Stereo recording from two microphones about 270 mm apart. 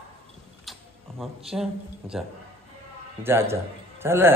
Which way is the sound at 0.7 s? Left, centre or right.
Centre.